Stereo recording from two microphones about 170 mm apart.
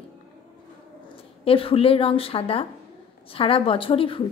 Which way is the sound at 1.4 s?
35° left (ahead or behind).